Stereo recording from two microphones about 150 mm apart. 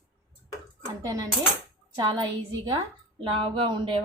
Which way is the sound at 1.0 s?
25° right (ahead or behind).